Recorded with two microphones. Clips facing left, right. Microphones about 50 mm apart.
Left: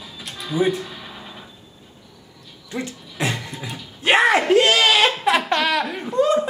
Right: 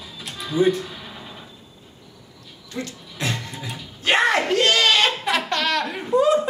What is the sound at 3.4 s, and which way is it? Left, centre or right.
Music, centre.